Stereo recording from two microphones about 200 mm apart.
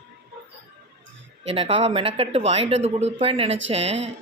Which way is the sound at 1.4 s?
30° right (ahead or behind).